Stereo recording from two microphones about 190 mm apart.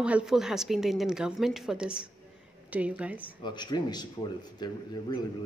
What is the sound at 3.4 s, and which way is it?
Speech, 25° left (ahead or behind).